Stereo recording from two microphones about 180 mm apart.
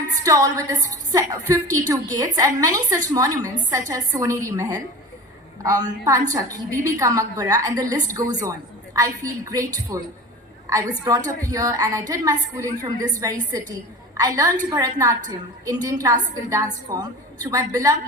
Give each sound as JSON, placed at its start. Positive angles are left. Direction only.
{"t": 0.3, "sound": "a woman's voice", "side_deg": -20}